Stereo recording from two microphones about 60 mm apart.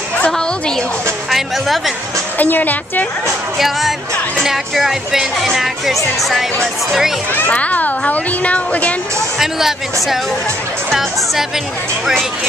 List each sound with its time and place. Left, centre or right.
0.3 s a woman's voice: centre
2.3 s speech: left
3.5 s speech: centre
7.3 s speech: left
9.4 s speech: centre
10.9 s speech: centre